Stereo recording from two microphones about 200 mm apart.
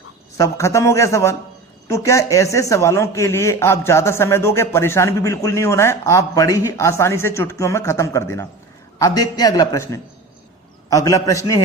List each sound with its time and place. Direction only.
0.3 s a man's voice: 15° left (ahead or behind)